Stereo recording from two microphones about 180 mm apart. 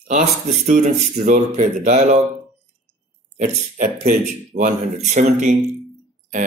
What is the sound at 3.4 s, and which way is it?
Speech, 45° right (ahead or behind).